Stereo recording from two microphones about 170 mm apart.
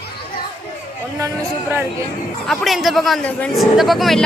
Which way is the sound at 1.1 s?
15° right (ahead or behind).